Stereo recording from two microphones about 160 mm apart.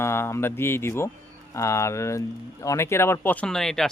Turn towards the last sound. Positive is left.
turn(degrees=0)  # may be behind; listen again after turning